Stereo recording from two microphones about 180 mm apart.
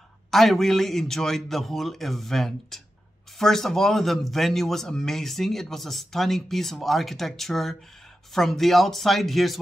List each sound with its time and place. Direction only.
0.3 s a man's voice: centre (ahead or behind)